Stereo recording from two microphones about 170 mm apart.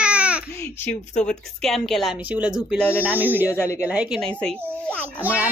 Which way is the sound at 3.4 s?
15° left (ahead or behind).